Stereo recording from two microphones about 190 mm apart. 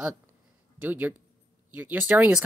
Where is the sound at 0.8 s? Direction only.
10° right (ahead or behind).